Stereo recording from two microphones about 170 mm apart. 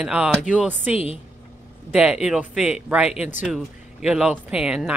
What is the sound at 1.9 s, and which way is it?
Speech, 5° right (ahead or behind).